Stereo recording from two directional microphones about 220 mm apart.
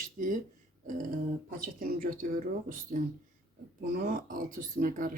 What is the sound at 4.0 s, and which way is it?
Speech, 40° right (ahead or behind).